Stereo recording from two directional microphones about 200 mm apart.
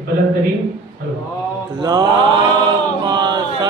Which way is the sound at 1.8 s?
20° right (ahead or behind).